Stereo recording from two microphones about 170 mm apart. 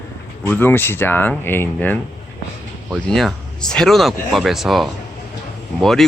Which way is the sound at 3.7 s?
Centre (ahead or behind).